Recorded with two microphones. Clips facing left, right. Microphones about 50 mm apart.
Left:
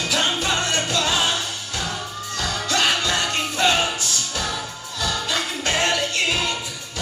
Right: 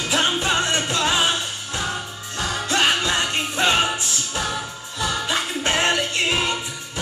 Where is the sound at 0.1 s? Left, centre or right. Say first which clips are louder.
Right 2 dB; right.